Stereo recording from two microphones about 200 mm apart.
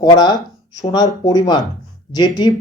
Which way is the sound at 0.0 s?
20° left (ahead or behind).